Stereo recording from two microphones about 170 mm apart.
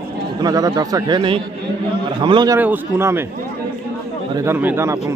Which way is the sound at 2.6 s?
10° right (ahead or behind).